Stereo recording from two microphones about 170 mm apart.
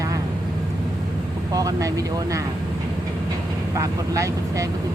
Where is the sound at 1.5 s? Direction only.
20° right (ahead or behind).